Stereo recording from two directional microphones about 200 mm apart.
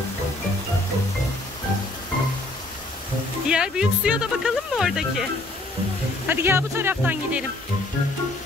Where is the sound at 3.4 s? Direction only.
5° right (ahead or behind).